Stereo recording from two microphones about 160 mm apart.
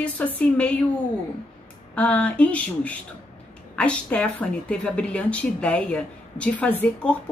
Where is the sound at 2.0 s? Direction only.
10° left (ahead or behind).